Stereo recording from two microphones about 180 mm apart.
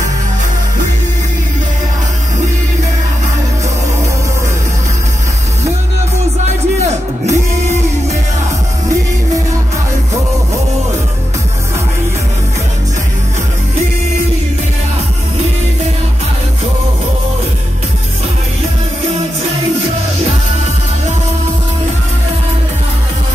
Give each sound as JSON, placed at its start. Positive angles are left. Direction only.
{"t": 6.4, "sound": "music", "side_deg": -40}